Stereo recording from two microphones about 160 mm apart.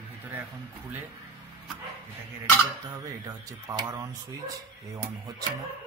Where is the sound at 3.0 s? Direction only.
20° right (ahead or behind).